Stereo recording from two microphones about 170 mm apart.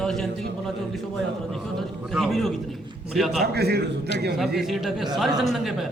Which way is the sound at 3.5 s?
70° right (ahead or behind).